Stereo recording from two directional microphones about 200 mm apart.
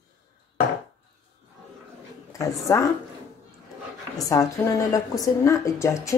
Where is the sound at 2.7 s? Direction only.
15° left (ahead or behind).